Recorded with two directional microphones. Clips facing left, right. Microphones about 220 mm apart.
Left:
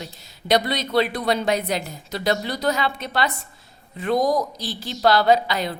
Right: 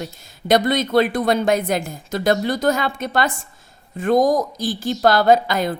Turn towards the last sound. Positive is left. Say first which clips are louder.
# right 3 dB
turn(degrees=-50)  # may be behind; listen again after turning